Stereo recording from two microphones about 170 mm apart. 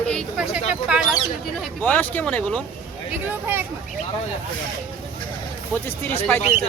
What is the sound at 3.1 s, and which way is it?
Speech, 10° right (ahead or behind).